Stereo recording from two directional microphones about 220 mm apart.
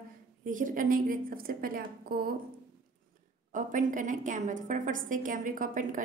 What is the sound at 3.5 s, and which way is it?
A woman's voice, 35° right (ahead or behind).